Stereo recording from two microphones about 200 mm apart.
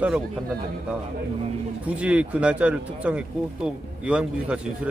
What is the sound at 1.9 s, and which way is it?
Speech, 5° right (ahead or behind).